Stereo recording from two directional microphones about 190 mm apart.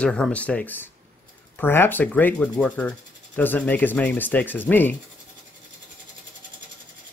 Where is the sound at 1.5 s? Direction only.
10° left (ahead or behind).